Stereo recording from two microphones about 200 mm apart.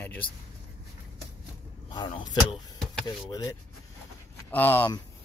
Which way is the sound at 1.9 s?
20° left (ahead or behind).